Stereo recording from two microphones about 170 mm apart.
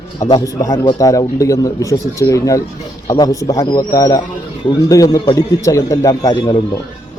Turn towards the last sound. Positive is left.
turn(degrees=25)  # may be behind; listen again after turning